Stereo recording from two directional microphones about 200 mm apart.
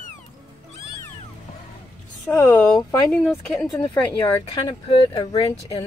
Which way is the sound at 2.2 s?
15° left (ahead or behind).